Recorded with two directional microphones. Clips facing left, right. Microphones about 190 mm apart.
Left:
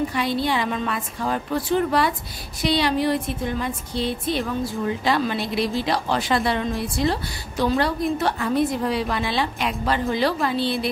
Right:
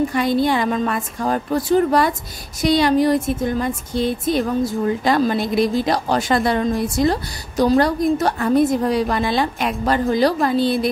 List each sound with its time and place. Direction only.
0.1 s a woman's voice: 45° right (ahead or behind)